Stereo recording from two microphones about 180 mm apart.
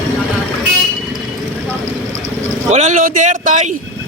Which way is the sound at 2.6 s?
40° right (ahead or behind).